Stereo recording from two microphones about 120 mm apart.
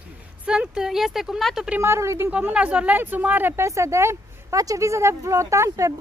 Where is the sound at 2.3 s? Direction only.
10° right (ahead or behind).